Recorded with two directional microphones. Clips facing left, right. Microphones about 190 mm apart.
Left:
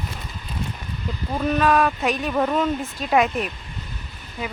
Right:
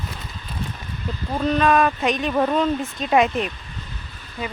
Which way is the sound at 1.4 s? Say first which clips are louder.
Right 1 dB; 5° left (ahead or behind).